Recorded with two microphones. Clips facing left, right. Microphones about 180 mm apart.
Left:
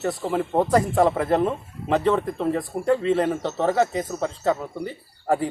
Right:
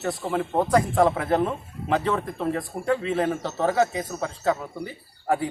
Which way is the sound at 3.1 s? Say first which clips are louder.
Left 3 dB; centre (ahead or behind).